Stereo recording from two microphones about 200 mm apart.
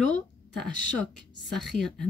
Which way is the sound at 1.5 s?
Centre (ahead or behind).